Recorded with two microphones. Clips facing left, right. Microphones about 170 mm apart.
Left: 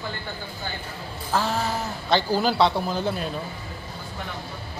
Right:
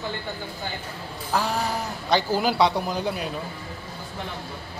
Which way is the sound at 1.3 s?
15° right (ahead or behind).